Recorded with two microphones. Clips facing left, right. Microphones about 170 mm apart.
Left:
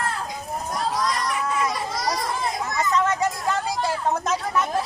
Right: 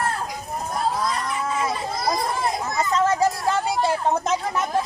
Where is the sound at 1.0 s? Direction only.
90° left.